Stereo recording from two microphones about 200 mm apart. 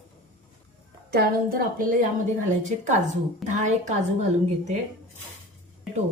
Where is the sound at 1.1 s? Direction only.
45° right (ahead or behind).